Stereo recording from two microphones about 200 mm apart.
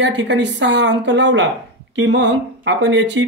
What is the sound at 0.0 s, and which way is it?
A woman's voice, 60° right (ahead or behind).